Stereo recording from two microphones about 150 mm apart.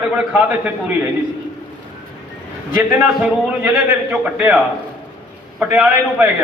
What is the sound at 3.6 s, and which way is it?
Speech, 10° right (ahead or behind).